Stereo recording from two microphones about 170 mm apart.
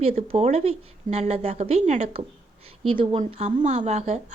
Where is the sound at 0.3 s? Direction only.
35° right (ahead or behind).